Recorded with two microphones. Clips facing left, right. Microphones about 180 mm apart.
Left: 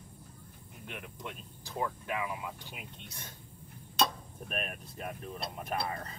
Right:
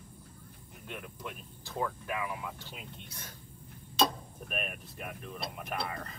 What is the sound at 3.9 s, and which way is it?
Speech, 5° right (ahead or behind).